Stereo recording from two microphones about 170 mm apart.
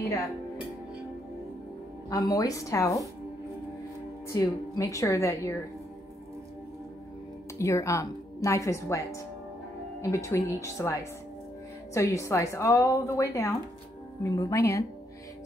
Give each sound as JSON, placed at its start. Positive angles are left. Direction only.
{"t": 2.0, "sound": "a woman's voice", "side_deg": 20}
{"t": 4.3, "sound": "a woman's voice", "side_deg": 20}
{"t": 7.5, "sound": "a woman's voice", "side_deg": 20}